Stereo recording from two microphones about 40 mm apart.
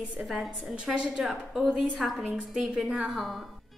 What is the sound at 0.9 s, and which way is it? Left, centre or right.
Speech, right.